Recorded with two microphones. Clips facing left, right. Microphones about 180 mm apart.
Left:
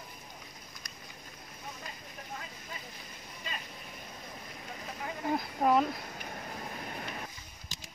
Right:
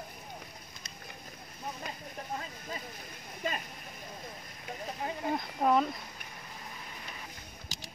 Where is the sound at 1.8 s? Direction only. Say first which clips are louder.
Right 5 dB; 65° right (ahead or behind).